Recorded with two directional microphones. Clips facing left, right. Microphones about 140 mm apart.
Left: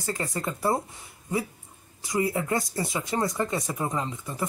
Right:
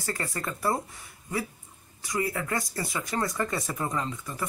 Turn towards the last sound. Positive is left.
turn(degrees=25)  # may be behind; listen again after turning